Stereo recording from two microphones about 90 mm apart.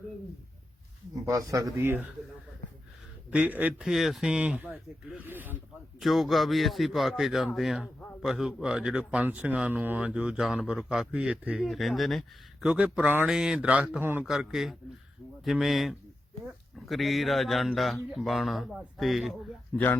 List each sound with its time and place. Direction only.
1.3 s a man's voice: 40° right (ahead or behind)
1.8 s speech: 25° right (ahead or behind)
3.2 s speech: 15° right (ahead or behind)
3.8 s speech: 5° right (ahead or behind); by 5.5 s 20° right (ahead or behind)
6.0 s a man's voice: centre (ahead or behind)
11.7 s a man's voice: centre (ahead or behind); by 13.2 s 15° right (ahead or behind)
13.2 s speech: 5° right (ahead or behind); by 14.3 s 25° right (ahead or behind)
14.3 s a man's voice: 5° right (ahead or behind)
19.7 s speech: 20° left (ahead or behind)